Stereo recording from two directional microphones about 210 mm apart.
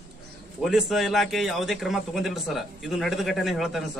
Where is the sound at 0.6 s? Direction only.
Centre (ahead or behind).